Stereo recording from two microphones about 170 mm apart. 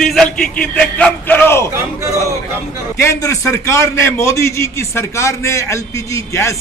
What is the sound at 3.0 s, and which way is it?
A man's voice, 20° left (ahead or behind).